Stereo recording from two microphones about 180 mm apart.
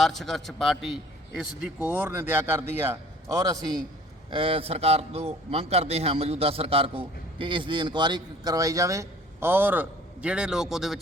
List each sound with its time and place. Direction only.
0.0 s a man's voice: centre (ahead or behind); by 3.6 s 20° right (ahead or behind)
4.3 s speech: 30° right (ahead or behind); by 11.0 s centre (ahead or behind)